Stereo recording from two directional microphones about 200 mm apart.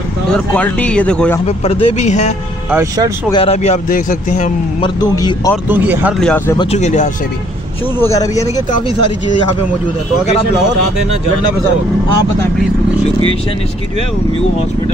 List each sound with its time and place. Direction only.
0.3 s speech: 5° left (ahead or behind)
1.4 s speech: 30° left (ahead or behind)
2.7 s speech: 15° right (ahead or behind)
3.3 s speech: 30° left (ahead or behind)
4.8 s a man's voice: 20° left (ahead or behind)
5.7 s speech: 10° right (ahead or behind)
6.1 s speech: 5° left (ahead or behind)
6.6 s speech: 35° left (ahead or behind)
8.0 s speech: 15° left (ahead or behind)